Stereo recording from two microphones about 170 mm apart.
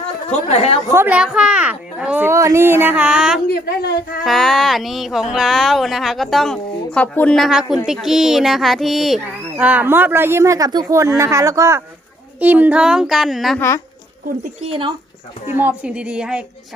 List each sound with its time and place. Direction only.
0.3 s speech: 40° left (ahead or behind)
0.9 s speech: 10° right (ahead or behind)
3.5 s speech: 65° left (ahead or behind)
4.2 s speech: centre (ahead or behind)
13.6 s speech: 15° left (ahead or behind)
14.7 s speech: 30° right (ahead or behind)
15.4 s speech: 10° right (ahead or behind)